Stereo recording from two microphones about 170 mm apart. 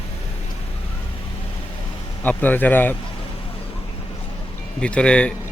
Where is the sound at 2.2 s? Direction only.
10° left (ahead or behind).